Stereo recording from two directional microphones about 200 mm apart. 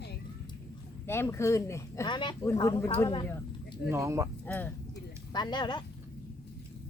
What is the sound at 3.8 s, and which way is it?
Speech, 15° right (ahead or behind).